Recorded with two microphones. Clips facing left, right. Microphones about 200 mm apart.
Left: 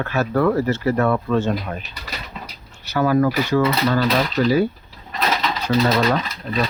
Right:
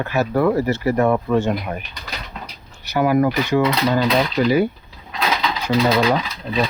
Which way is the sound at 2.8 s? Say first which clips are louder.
Right 1 dB; 15° right (ahead or behind).